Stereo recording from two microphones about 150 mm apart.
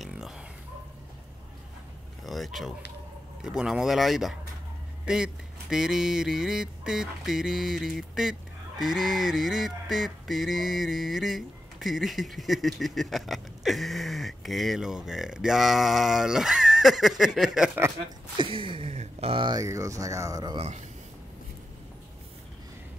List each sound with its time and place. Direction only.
0.0 s a sound: 5° right (ahead or behind)
2.2 s a sound: centre (ahead or behind)
17.6 s speech: 15° right (ahead or behind)
18.4 s speech: 35° right (ahead or behind)
19.6 s speech: 20° right (ahead or behind)
20.5 s speech: 50° right (ahead or behind)